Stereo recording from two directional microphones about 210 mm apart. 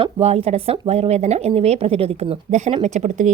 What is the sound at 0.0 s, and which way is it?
A woman's voice, 30° right (ahead or behind).